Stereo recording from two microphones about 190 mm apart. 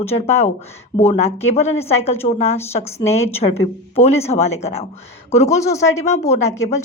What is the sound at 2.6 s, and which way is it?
Speech, 15° left (ahead or behind).